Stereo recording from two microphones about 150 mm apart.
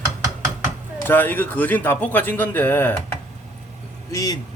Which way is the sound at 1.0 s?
15° left (ahead or behind).